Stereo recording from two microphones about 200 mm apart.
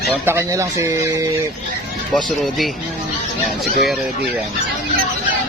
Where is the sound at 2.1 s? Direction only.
Centre (ahead or behind).